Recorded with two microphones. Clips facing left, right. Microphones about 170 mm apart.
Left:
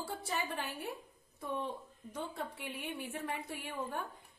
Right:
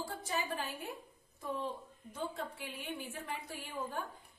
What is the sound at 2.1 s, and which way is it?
A woman's voice, 65° left (ahead or behind).